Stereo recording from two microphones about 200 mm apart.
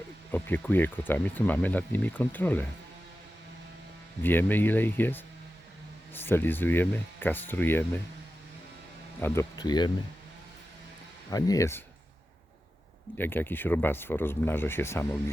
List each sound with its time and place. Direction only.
0.3 s speech: 10° left (ahead or behind)
4.2 s speech: 10° left (ahead or behind)
9.2 s speech: 15° left (ahead or behind)
11.3 s speech: 15° left (ahead or behind)
13.1 s speech: 10° left (ahead or behind)